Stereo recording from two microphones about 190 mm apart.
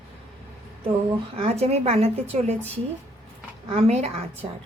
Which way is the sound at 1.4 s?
35° right (ahead or behind).